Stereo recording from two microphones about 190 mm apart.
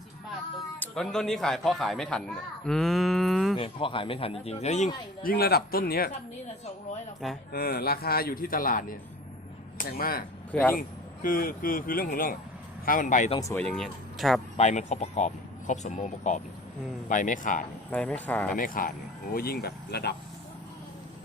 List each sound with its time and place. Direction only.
0.8 s speech: 5° left (ahead or behind)
3.6 s speech: 25° left (ahead or behind)
5.2 s speech: 50° left (ahead or behind)
7.5 s speech: 55° left (ahead or behind)
10.5 s speech: 10° left (ahead or behind)
10.8 s speech: 45° left (ahead or behind)
13.4 s speech: 10° left (ahead or behind)
14.5 s speech: 35° left (ahead or behind)
17.9 s speech: 5° left (ahead or behind)
18.5 s speech: 45° left (ahead or behind)